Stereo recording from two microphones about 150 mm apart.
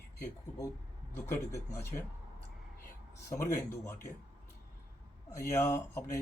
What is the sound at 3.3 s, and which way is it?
Speech, 20° left (ahead or behind).